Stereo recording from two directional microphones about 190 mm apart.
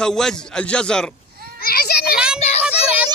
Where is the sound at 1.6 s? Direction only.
55° left (ahead or behind).